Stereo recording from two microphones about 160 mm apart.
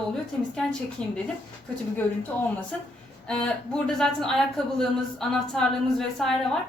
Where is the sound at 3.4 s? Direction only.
5° left (ahead or behind).